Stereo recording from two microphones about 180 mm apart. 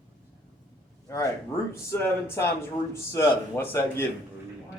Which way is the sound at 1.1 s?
15° left (ahead or behind).